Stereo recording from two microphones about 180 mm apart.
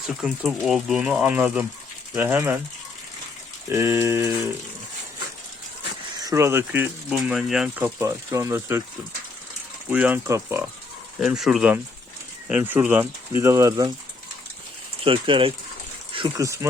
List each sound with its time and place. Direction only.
0.2 s speech: centre (ahead or behind)
3.7 s speech: 15° right (ahead or behind)
6.1 s speech: 20° right (ahead or behind)
7.9 s speech: 15° right (ahead or behind)
9.9 s speech: 10° right (ahead or behind)
11.2 s speech: centre (ahead or behind); by 13.9 s 20° right (ahead or behind)
15.0 s speech: 30° right (ahead or behind)